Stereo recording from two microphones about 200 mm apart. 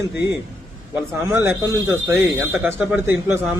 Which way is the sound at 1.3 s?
10° right (ahead or behind).